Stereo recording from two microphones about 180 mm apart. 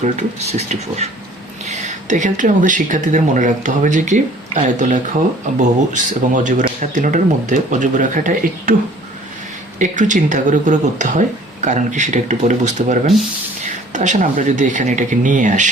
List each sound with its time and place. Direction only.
0.5 s speech: 40° right (ahead or behind)
9.7 s speech: 45° right (ahead or behind)